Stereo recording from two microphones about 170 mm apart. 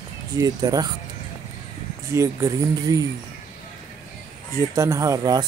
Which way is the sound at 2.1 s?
15° right (ahead or behind).